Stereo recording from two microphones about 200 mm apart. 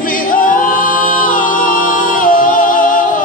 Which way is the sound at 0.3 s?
45° left (ahead or behind).